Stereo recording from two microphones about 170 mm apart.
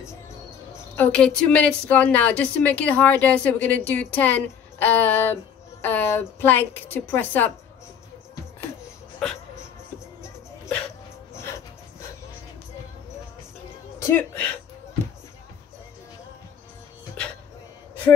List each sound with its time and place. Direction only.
0.7 s a woman's voice: 10° left (ahead or behind)
11.3 s dog: 15° left (ahead or behind)
13.9 s speech: 15° left (ahead or behind)